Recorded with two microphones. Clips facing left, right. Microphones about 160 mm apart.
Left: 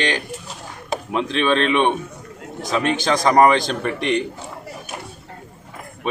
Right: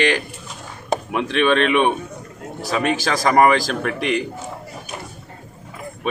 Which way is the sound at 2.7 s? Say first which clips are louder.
Left 1 dB; 5° right (ahead or behind).